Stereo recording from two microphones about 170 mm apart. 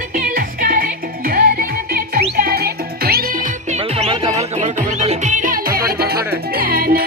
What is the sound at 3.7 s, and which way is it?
Music, 35° right (ahead or behind).